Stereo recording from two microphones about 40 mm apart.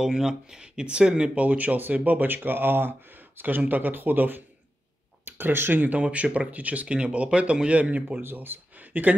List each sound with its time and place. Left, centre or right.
0.0 s speech: centre
1.4 s speech: right
2.1 s speech: right
5.2 s speech: right
6.1 s speech: right
6.9 s speech: right
8.2 s speech: right